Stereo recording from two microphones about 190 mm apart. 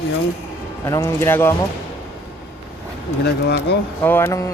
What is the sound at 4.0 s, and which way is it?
Speech, 10° left (ahead or behind).